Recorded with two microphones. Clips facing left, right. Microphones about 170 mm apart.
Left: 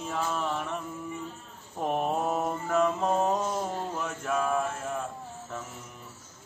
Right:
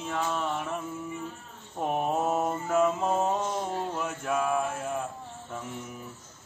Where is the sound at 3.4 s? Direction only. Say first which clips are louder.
Even; 5° left (ahead or behind).